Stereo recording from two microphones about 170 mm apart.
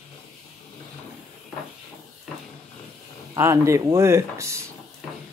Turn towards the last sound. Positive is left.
turn(degrees=-15)  # may be behind; listen again after turning